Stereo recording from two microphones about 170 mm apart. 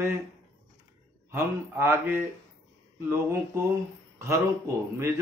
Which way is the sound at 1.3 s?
15° right (ahead or behind).